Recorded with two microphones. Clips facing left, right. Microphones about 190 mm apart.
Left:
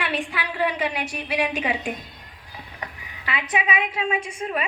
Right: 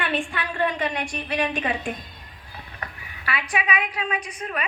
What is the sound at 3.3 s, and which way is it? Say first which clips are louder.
A woman's voice: left 1 dB; 20° left (ahead or behind).